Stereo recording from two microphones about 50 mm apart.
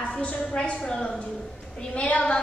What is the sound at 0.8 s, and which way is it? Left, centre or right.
Speech, centre.